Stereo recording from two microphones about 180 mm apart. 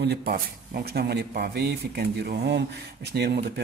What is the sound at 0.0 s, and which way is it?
A man's voice, 60° right (ahead or behind).